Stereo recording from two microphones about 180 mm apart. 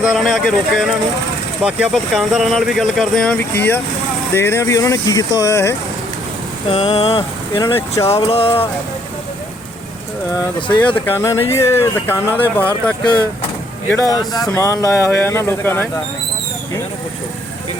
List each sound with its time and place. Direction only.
0.0 s speech: centre (ahead or behind); by 5.7 s 15° left (ahead or behind)
6.7 s speech: 25° left (ahead or behind)
7.6 s speech: 15° left (ahead or behind)
8.1 s music: 35° left (ahead or behind)
10.7 s speech: 10° left (ahead or behind)
13.9 s speech: 20° left (ahead or behind)